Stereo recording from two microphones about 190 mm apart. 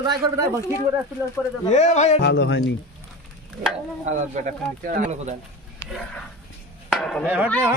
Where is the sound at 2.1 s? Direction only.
65° left (ahead or behind).